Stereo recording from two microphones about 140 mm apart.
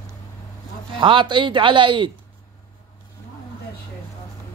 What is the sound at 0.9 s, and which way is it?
A man's voice, 35° right (ahead or behind).